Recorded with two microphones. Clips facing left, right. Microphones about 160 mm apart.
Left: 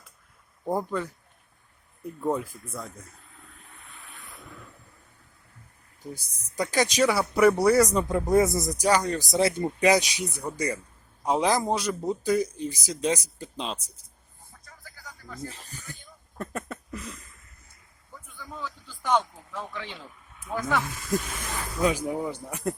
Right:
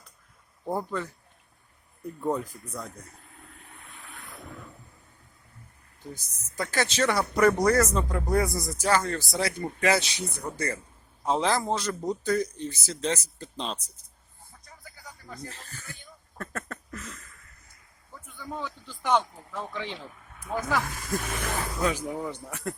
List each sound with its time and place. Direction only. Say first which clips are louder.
0.6 s speech: left 2 dB; 10° left (ahead or behind)
2.2 s speech: left 1 dB; 5° left (ahead or behind)
6.1 s speech: left 4 dB; 10° left (ahead or behind)
15.4 s speech: left 3 dB; 10° left (ahead or behind)
16.4 s a sound: left 3 dB; 15° left (ahead or behind)
19.0 s speech: even; 10° right (ahead or behind)
21.2 s speech: right 3 dB; 65° right (ahead or behind)
21.8 s speech: left 5 dB; 10° left (ahead or behind)